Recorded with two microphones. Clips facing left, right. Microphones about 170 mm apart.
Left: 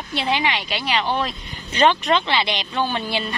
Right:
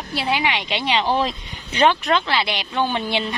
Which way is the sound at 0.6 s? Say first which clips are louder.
Right 2 dB; 25° right (ahead or behind).